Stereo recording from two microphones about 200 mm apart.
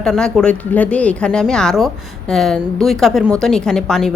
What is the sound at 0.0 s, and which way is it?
A woman's voice, 5° left (ahead or behind).